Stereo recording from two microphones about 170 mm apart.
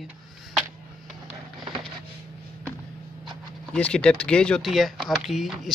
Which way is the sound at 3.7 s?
5° left (ahead or behind).